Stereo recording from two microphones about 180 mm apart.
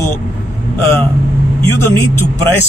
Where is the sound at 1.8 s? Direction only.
15° left (ahead or behind).